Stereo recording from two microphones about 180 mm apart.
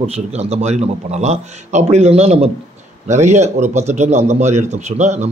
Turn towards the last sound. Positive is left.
turn(degrees=-40)  # may be behind; listen again after turning